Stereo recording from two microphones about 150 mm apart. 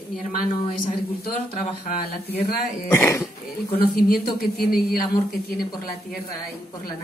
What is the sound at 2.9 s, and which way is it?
Speech, 20° left (ahead or behind).